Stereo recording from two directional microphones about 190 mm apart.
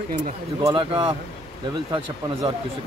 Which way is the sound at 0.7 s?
25° right (ahead or behind).